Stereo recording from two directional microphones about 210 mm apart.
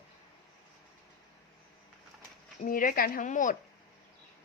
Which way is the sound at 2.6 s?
40° left (ahead or behind).